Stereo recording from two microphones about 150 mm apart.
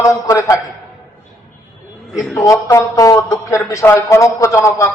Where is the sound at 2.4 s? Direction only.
20° left (ahead or behind).